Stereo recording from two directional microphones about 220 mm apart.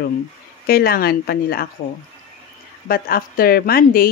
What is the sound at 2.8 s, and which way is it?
Speech, 40° left (ahead or behind).